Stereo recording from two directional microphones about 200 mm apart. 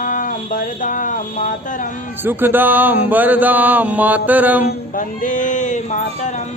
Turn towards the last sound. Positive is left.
turn(degrees=35)  # may be behind; listen again after turning